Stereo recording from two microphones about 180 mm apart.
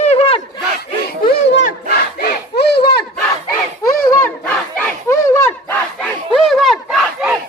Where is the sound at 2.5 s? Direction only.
65° left (ahead or behind).